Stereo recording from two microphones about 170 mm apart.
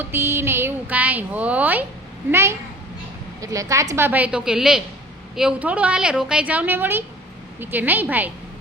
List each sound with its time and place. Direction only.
0.0 s a woman's voice: 15° right (ahead or behind)